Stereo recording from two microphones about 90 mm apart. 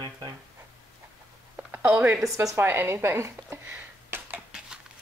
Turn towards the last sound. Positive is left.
turn(degrees=-15)  # may be behind; listen again after turning